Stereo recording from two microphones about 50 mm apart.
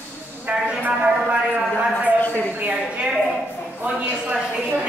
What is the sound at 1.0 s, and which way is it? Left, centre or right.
Speech, right.